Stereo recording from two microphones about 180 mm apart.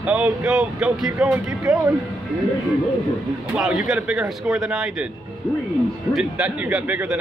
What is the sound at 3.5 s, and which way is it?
Speech, 5° right (ahead or behind).